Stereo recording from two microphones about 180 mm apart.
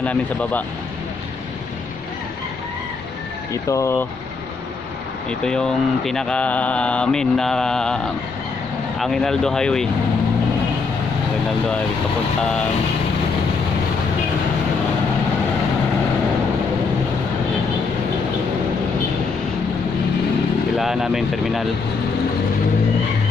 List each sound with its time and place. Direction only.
0.0 s speech: 10° left (ahead or behind)
3.6 s speech: 15° left (ahead or behind)
5.4 s mantra: 5° left (ahead or behind)
9.0 s mantra: 5° left (ahead or behind)
20.7 s speech: centre (ahead or behind)